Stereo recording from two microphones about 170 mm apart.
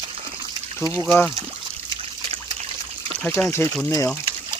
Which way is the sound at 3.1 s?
10° left (ahead or behind).